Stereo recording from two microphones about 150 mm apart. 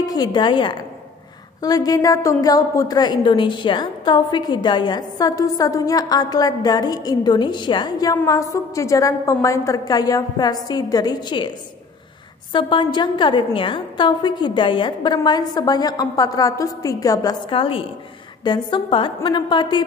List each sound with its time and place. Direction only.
0.0 s a woman's voice: 25° left (ahead or behind)
12.5 s a woman's voice: 30° left (ahead or behind)